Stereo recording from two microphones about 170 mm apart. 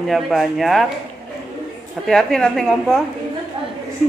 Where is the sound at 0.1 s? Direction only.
Centre (ahead or behind).